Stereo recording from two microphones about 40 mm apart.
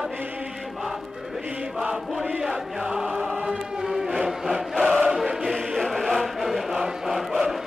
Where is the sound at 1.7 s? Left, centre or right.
Centre.